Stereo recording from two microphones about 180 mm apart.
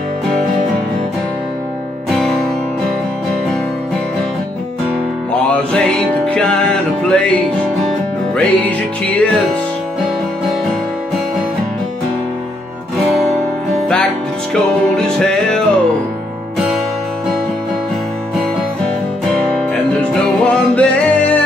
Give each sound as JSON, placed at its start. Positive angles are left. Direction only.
{"t": 2.0, "sound": "music", "side_deg": 0}
{"t": 5.7, "sound": "music", "side_deg": 5}
{"t": 8.4, "sound": "music", "side_deg": 5}
{"t": 14.5, "sound": "music", "side_deg": 5}
{"t": 19.3, "sound": "music", "side_deg": 5}